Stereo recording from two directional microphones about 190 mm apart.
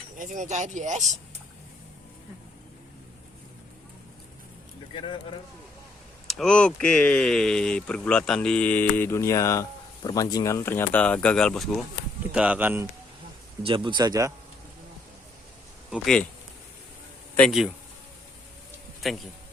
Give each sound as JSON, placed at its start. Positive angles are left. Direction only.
{"t": 0.2, "sound": "speech", "side_deg": -40}
{"t": 4.9, "sound": "speech", "side_deg": 25}
{"t": 6.2, "sound": "speech", "side_deg": 0}
{"t": 13.6, "sound": "speech", "side_deg": -25}
{"t": 15.9, "sound": "speech", "side_deg": 5}
{"t": 17.3, "sound": "speech", "side_deg": 0}
{"t": 19.0, "sound": "speech", "side_deg": 0}